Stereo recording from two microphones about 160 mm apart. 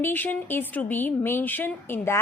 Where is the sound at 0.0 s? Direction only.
10° left (ahead or behind).